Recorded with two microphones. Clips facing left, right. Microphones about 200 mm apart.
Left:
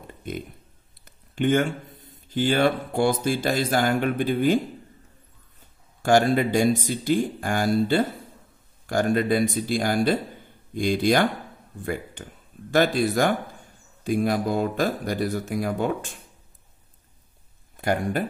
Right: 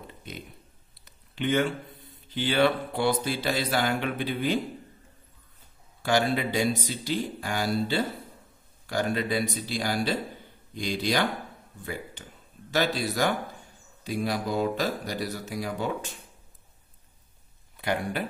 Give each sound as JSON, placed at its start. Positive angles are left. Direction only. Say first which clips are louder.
{"t": 0.0, "sound": "a sound", "louder": "left 8 dB", "side_deg": 50}
{"t": 1.0, "sound": "speech", "louder": "left 6 dB", "side_deg": 50}
{"t": 6.0, "sound": "speech", "louder": "left 6 dB", "side_deg": 50}
{"t": 17.7, "sound": "speech", "louder": "left 5 dB", "side_deg": 45}